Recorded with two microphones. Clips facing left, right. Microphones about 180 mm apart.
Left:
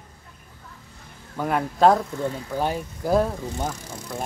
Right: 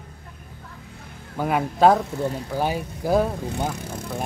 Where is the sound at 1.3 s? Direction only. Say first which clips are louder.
Right 1 dB; 10° right (ahead or behind).